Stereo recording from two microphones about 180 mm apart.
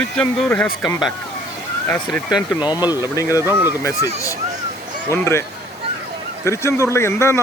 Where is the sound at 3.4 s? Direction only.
10° right (ahead or behind).